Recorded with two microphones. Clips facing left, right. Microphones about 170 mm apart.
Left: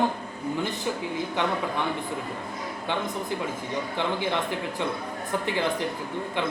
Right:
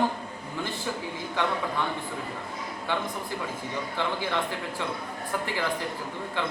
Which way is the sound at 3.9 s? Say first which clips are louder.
Left 2 dB; 20° left (ahead or behind).